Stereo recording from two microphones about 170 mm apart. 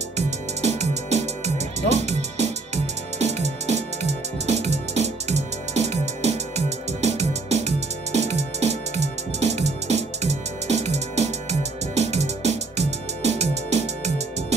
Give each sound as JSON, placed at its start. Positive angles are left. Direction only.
{"t": 0.6, "sound": "music", "side_deg": -40}